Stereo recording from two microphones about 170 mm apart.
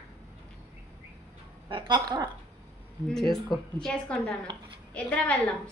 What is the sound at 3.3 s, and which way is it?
A woman's voice, 5° left (ahead or behind).